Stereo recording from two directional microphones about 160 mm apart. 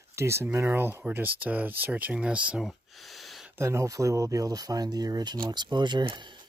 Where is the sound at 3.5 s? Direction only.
15° right (ahead or behind).